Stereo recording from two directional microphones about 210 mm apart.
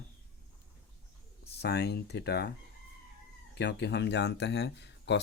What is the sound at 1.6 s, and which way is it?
Speech, 50° left (ahead or behind).